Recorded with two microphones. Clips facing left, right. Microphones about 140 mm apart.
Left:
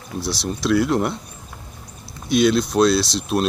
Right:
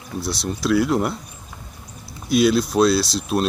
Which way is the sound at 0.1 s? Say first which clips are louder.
Even; centre (ahead or behind).